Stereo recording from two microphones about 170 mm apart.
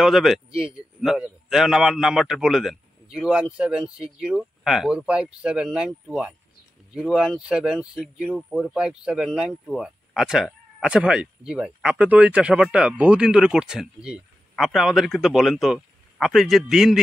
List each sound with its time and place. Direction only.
0.0 s speech: centre (ahead or behind)